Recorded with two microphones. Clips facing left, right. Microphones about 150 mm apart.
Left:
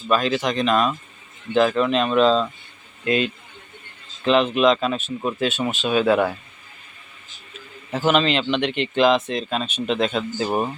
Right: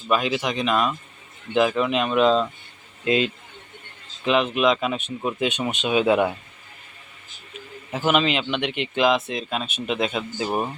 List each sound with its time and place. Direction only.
0.1 s speech: 10° right (ahead or behind)
4.2 s speech: 5° right (ahead or behind)
7.9 s speech: 10° right (ahead or behind)